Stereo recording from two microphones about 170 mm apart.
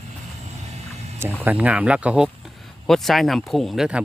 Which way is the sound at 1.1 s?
15° right (ahead or behind).